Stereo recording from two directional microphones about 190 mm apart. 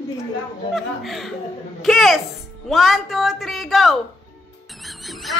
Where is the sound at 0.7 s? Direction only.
Centre (ahead or behind).